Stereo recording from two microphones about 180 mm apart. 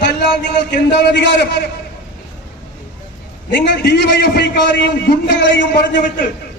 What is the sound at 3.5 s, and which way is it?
A man's voice, 70° left (ahead or behind).